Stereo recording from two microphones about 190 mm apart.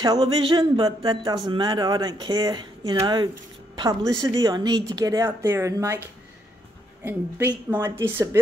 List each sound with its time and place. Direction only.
0.0 s a woman's voice: 25° right (ahead or behind)
7.0 s a woman's voice: 10° right (ahead or behind)